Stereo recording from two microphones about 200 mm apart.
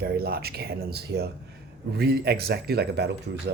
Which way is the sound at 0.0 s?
50° right (ahead or behind).